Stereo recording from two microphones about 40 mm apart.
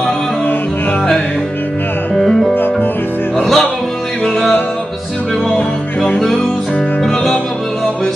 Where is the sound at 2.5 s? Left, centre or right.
Left.